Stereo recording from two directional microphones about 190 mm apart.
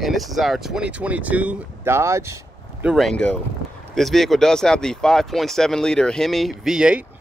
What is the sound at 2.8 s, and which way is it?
Speech, centre (ahead or behind).